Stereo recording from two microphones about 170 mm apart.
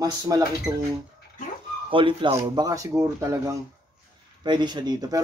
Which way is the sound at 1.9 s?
30° right (ahead or behind).